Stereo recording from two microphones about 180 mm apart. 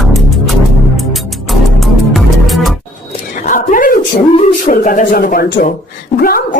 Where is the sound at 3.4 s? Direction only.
45° left (ahead or behind).